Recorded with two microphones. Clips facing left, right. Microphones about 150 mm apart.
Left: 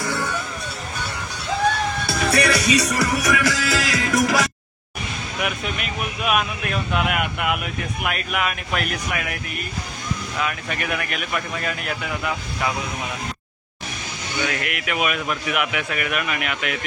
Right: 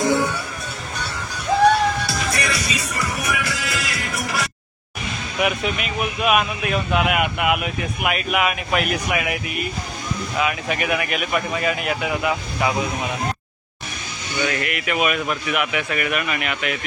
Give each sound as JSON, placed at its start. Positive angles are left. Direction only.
{"t": 0.0, "sound": "music", "side_deg": -15}
{"t": 2.0, "sound": "music", "side_deg": 60}
{"t": 5.4, "sound": "speech", "side_deg": -5}
{"t": 14.5, "sound": "speech", "side_deg": 0}